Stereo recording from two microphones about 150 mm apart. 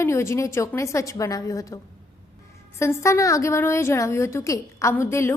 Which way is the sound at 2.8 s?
20° left (ahead or behind).